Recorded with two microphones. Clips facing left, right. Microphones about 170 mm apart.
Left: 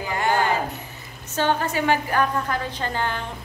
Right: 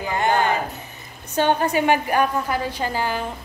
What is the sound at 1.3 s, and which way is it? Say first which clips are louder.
A woman's voice: right 3 dB; 15° right (ahead or behind).